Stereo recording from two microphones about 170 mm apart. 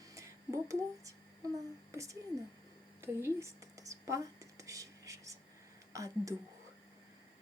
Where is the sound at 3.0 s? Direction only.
15° right (ahead or behind).